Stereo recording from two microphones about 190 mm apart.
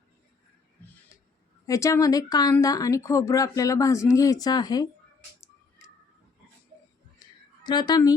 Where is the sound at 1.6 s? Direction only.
15° left (ahead or behind).